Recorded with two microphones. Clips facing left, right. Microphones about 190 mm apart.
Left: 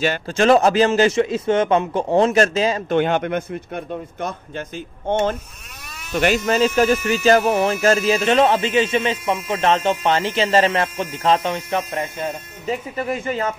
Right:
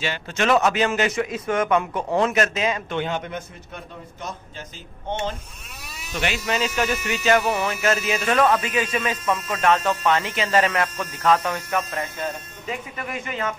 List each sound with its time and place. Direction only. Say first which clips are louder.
0.3 s speech: left 5 dB; 30° left (ahead or behind)
3.0 s speech: left 8 dB; 65° left (ahead or behind); by 13.6 s 35° left (ahead or behind)